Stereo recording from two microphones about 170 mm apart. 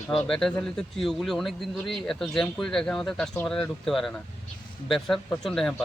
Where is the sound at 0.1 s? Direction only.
5° left (ahead or behind).